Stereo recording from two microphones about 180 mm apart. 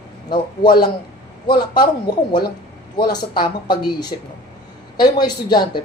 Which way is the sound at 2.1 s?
20° left (ahead or behind).